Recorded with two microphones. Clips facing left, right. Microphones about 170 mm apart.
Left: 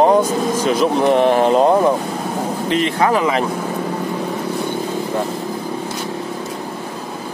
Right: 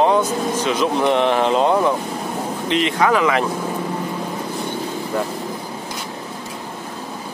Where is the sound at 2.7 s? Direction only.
35° left (ahead or behind).